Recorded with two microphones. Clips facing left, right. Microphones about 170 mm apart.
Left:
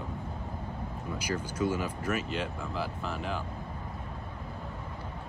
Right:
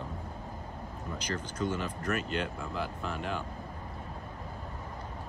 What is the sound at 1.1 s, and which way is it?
Speech, 10° left (ahead or behind).